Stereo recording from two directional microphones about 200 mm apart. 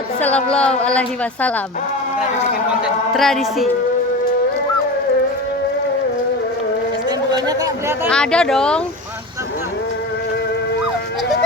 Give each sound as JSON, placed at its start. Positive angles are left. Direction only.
{"t": 0.2, "sound": "a woman's voice", "side_deg": 5}
{"t": 3.2, "sound": "a woman's voice", "side_deg": 0}
{"t": 7.3, "sound": "chatter", "side_deg": -20}
{"t": 8.1, "sound": "a woman's voice", "side_deg": 5}